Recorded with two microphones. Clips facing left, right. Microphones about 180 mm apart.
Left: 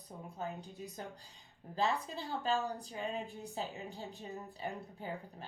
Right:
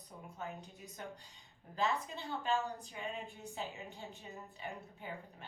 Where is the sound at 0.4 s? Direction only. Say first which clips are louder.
Left 3 dB; 35° left (ahead or behind).